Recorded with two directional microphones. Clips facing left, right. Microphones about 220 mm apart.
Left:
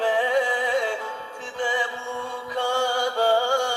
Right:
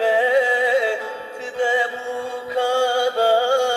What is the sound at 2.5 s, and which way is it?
Music, 40° right (ahead or behind).